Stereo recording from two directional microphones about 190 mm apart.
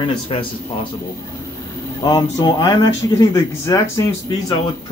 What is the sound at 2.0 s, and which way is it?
Speech, 20° left (ahead or behind).